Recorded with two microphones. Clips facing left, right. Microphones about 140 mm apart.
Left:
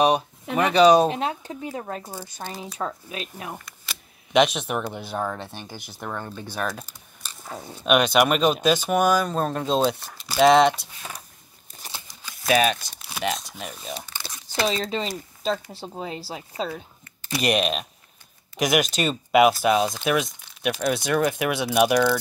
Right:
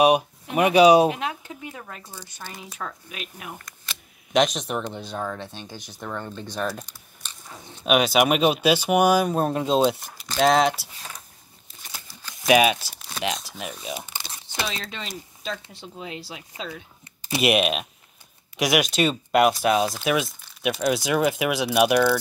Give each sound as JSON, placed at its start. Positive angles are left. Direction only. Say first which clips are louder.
{"t": 0.6, "sound": "speech", "louder": "right 1 dB", "side_deg": -10}
{"t": 1.1, "sound": "speech", "louder": "left 3 dB", "side_deg": 35}
{"t": 2.8, "sound": "speech", "louder": "left 4 dB", "side_deg": 30}
{"t": 3.5, "sound": "speech", "louder": "left 1 dB", "side_deg": 5}
{"t": 7.4, "sound": "speech", "louder": "left 8 dB", "side_deg": 55}
{"t": 7.8, "sound": "speech", "louder": "even", "side_deg": -5}
{"t": 10.2, "sound": "speech", "louder": "left 3 dB", "side_deg": 5}
{"t": 12.1, "sound": "a sound", "louder": "even", "side_deg": 15}
{"t": 12.4, "sound": "speech", "louder": "right 2 dB", "side_deg": -10}
{"t": 14.0, "sound": "crumpling", "louder": "even", "side_deg": -25}
{"t": 14.5, "sound": "speech", "louder": "left 7 dB", "side_deg": 35}
{"t": 17.4, "sound": "speech", "louder": "right 2 dB", "side_deg": -5}